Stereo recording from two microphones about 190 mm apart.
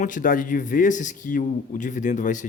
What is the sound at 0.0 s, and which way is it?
Speech, 45° left (ahead or behind).